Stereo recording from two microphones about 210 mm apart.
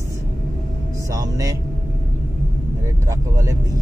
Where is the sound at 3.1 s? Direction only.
15° right (ahead or behind).